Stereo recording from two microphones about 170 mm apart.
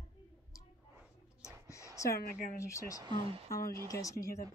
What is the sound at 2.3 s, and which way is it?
Speech, 55° left (ahead or behind).